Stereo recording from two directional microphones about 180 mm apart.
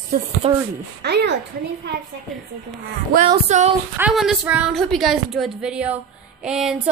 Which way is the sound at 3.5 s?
40° right (ahead or behind).